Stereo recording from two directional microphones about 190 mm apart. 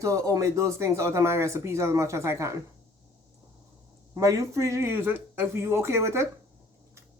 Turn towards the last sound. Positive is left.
turn(degrees=-15)  # may be behind; listen again after turning